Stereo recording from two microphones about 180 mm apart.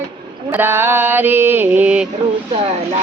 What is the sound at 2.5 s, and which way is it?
Speech, 35° right (ahead or behind).